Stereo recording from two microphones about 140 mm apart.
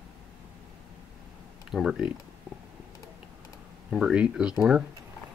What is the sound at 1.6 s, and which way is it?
Speech, 5° right (ahead or behind).